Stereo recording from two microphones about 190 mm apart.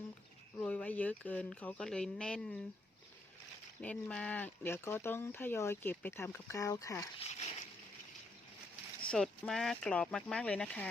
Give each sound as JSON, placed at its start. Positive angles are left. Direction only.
{"t": 0.5, "sound": "speech", "side_deg": 10}
{"t": 3.8, "sound": "speech", "side_deg": 5}
{"t": 7.2, "sound": "speech", "side_deg": 35}
{"t": 9.0, "sound": "speech", "side_deg": 5}